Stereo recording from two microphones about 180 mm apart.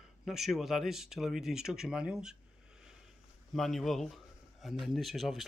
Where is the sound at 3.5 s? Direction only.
Centre (ahead or behind).